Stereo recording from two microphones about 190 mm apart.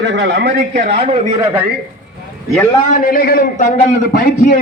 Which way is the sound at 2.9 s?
50° left (ahead or behind).